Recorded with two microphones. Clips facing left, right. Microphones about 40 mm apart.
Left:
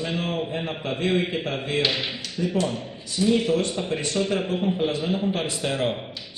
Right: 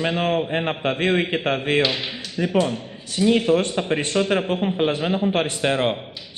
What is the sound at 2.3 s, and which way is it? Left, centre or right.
Speech, right.